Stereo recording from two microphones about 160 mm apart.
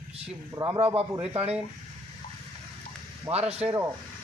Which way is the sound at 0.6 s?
35° right (ahead or behind).